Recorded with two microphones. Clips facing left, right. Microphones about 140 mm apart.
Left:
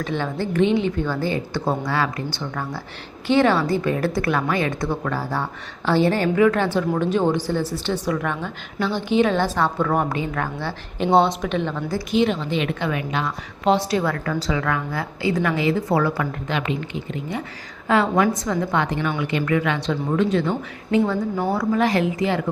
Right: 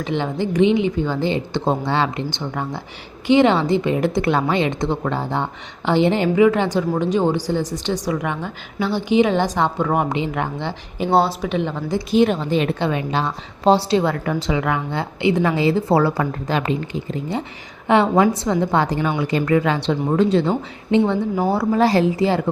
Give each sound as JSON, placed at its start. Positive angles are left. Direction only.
{"t": 0.0, "sound": "a woman's voice", "side_deg": -15}
{"t": 11.1, "sound": "a woman's voice", "side_deg": -5}
{"t": 12.1, "sound": "a woman's voice", "side_deg": -45}